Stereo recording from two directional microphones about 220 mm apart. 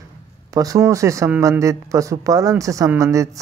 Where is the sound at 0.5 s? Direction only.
15° right (ahead or behind).